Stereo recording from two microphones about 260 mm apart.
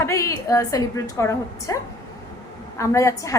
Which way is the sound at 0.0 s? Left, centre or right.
Centre.